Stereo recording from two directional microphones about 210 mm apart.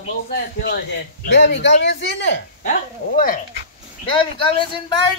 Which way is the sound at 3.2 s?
40° left (ahead or behind).